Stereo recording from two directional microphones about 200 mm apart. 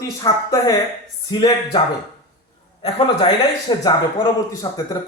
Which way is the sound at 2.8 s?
25° left (ahead or behind).